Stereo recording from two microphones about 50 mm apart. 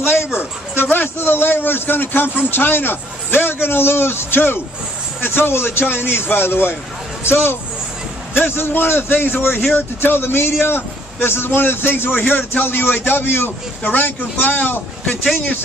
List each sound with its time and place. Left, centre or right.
0.1 s a man's voice: left